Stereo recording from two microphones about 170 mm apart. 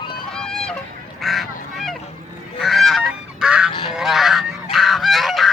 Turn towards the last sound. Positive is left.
turn(degrees=0)  # may be behind; listen again after turning